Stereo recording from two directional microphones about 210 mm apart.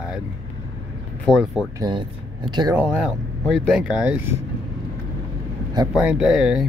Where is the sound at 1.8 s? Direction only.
20° right (ahead or behind).